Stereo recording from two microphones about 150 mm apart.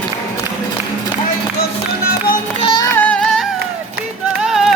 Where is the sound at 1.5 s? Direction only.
90° left.